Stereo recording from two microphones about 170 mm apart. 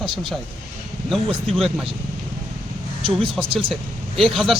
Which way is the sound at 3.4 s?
30° right (ahead or behind).